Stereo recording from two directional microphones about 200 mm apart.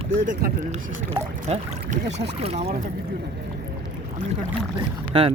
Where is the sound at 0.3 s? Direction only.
40° right (ahead or behind).